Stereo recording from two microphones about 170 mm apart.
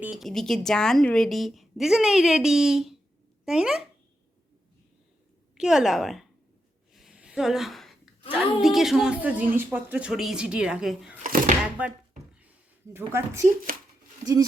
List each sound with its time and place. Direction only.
0.0 s a woman's voice: centre (ahead or behind)
5.5 s a woman's voice: 5° right (ahead or behind)
6.9 s a sound: centre (ahead or behind)
8.3 s a woman's voice: centre (ahead or behind)
11.2 s chopping: 50° right (ahead or behind)
12.3 s a sound: 10° right (ahead or behind)